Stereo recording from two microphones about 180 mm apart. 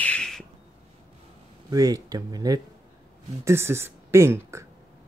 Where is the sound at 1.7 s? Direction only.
20° right (ahead or behind).